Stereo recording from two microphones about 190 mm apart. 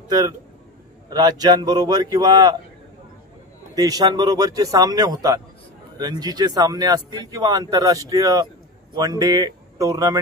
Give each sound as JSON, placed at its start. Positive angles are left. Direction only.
{"t": 1.1, "sound": "a man's voice", "side_deg": -20}
{"t": 3.7, "sound": "a man's voice", "side_deg": -20}